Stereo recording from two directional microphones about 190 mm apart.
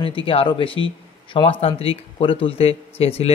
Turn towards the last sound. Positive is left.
turn(degrees=30)  # may be behind; listen again after turning